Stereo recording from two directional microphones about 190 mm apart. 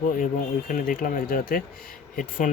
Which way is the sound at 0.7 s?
45° left (ahead or behind).